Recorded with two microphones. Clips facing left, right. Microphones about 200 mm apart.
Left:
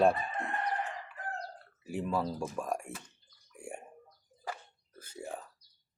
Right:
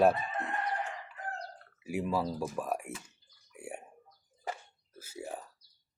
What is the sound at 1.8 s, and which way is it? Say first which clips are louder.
Speech: right 1 dB; 10° right (ahead or behind).